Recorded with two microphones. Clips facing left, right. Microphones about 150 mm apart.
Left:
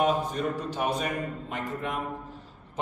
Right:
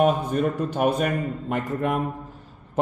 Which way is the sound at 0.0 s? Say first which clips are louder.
Right 5 dB; 55° right (ahead or behind).